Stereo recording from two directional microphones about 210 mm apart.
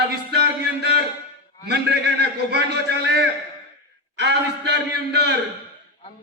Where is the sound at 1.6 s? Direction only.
55° right (ahead or behind).